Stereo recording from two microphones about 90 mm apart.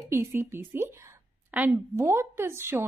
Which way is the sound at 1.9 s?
30° right (ahead or behind).